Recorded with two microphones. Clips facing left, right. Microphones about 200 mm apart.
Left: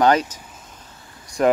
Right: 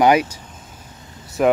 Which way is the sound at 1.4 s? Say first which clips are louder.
Right 1 dB; 5° right (ahead or behind).